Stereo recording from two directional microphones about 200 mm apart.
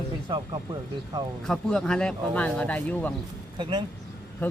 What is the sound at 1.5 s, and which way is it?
Speech, 5° left (ahead or behind).